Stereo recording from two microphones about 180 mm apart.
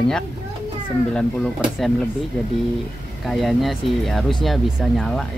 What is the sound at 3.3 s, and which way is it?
Speech, centre (ahead or behind).